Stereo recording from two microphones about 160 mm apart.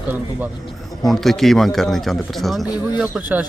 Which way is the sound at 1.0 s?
Centre (ahead or behind).